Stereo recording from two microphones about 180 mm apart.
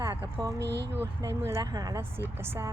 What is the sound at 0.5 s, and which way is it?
Speech, 70° right (ahead or behind).